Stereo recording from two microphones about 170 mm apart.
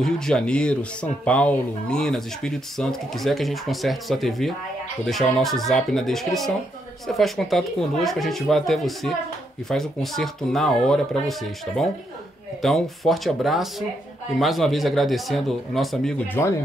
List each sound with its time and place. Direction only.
0.0 s speech: 5° left (ahead or behind)